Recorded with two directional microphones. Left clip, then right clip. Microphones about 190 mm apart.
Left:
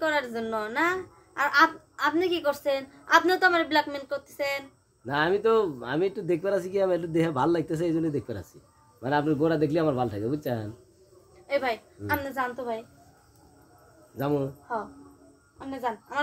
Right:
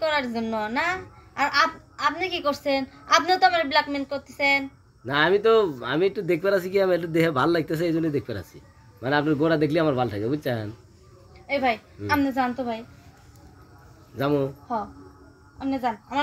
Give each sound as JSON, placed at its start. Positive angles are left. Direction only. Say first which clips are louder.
{"t": 0.0, "sound": "a woman's voice", "louder": "right 2 dB", "side_deg": 25}
{"t": 14.1, "sound": "speech", "louder": "right 4 dB", "side_deg": 20}